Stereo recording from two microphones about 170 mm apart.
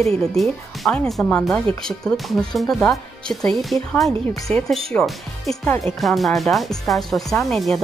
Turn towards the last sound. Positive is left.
turn(degrees=0)  # may be behind; listen again after turning